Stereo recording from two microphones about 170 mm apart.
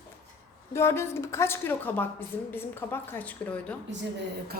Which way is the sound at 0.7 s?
15° left (ahead or behind).